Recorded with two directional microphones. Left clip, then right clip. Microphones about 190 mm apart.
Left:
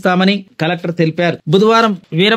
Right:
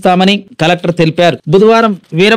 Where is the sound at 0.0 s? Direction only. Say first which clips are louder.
Right 5 dB; 30° right (ahead or behind).